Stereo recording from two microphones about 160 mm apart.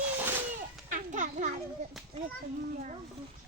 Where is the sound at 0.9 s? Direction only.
55° right (ahead or behind).